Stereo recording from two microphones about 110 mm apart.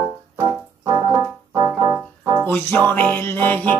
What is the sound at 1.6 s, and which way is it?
Music, 30° right (ahead or behind).